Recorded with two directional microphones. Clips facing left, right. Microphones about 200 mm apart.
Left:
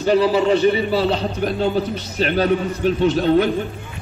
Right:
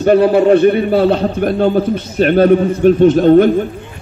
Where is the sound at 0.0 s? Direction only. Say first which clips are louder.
Right 6 dB; 55° right (ahead or behind).